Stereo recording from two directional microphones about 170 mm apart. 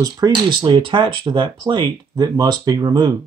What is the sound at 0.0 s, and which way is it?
Speech, 25° right (ahead or behind).